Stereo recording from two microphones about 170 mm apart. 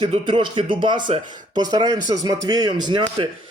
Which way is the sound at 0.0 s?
30° right (ahead or behind).